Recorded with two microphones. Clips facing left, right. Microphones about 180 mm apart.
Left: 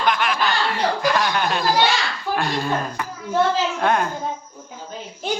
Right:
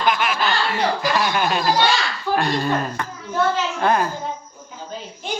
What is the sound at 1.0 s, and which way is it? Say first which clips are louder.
A man's voice: even; 5° right (ahead or behind).